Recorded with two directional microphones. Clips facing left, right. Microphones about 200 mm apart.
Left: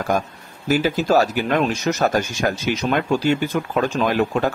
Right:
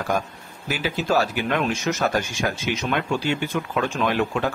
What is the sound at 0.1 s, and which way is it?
Speech, 40° left (ahead or behind).